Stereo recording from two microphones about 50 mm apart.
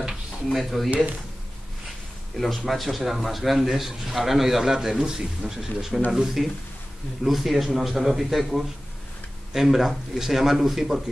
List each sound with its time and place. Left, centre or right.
0.1 s a sound: centre
0.8 s speech: right
2.3 s a man's voice: centre